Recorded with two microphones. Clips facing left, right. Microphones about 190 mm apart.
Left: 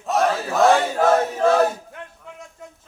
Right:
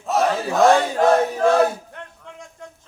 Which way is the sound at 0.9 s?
5° left (ahead or behind).